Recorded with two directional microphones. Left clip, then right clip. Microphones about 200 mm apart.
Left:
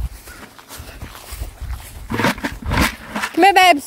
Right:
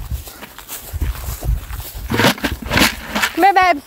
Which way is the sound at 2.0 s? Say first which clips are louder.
Right 4 dB; 50° right (ahead or behind).